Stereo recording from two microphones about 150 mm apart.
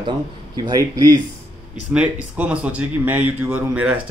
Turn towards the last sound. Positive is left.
turn(degrees=-10)  # may be behind; listen again after turning